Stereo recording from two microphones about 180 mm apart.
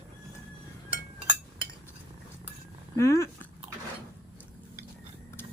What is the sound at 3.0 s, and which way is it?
Speech, 15° left (ahead or behind).